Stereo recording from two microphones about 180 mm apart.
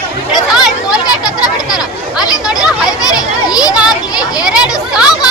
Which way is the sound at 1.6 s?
5° right (ahead or behind).